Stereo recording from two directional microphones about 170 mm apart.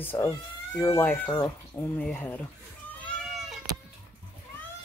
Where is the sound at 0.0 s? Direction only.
10° left (ahead or behind).